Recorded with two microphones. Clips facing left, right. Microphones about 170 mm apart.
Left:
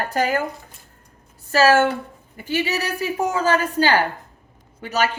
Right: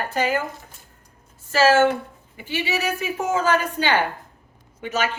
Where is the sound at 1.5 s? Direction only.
40° left (ahead or behind).